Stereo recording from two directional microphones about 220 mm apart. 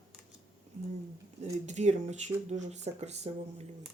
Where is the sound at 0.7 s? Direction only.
30° right (ahead or behind).